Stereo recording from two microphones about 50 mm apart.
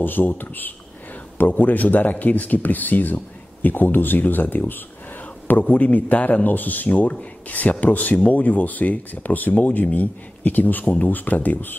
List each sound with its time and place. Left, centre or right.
0.0 s speech: left